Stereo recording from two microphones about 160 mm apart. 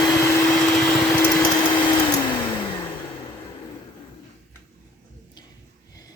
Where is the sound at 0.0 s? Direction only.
20° left (ahead or behind).